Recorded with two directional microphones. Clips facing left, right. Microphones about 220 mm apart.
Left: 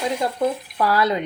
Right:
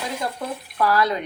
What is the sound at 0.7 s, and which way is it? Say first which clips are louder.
Speech: right 2 dB; 25° left (ahead or behind).